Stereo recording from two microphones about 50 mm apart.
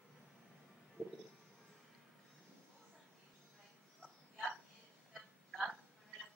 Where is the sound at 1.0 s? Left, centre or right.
Right.